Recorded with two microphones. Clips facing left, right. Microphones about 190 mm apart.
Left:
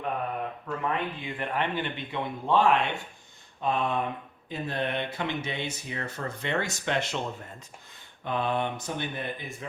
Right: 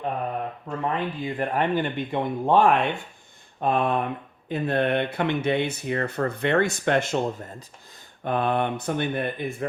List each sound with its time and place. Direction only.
0.8 s speech: 40° right (ahead or behind); by 9.6 s 55° right (ahead or behind)